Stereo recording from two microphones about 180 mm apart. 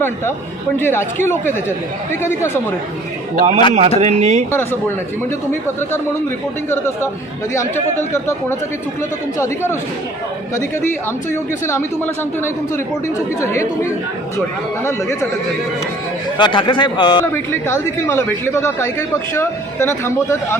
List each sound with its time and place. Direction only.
0.8 s speech: 10° left (ahead or behind)
3.3 s speech: 40° right (ahead or behind)
6.7 s speech: 15° left (ahead or behind)
11.6 s speech: 15° left (ahead or behind)
16.4 s a man's voice: 25° left (ahead or behind)
17.3 s speech: 15° left (ahead or behind)